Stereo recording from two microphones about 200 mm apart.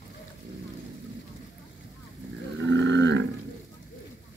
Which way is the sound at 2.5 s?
65° right (ahead or behind).